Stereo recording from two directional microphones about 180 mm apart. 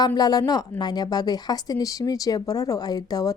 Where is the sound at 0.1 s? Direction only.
20° left (ahead or behind).